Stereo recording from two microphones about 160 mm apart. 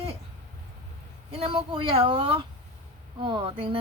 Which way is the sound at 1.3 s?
35° right (ahead or behind).